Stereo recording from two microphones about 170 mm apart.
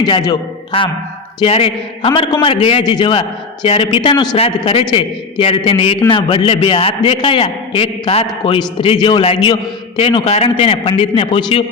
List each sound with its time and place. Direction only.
0.0 s a man's voice: 25° left (ahead or behind)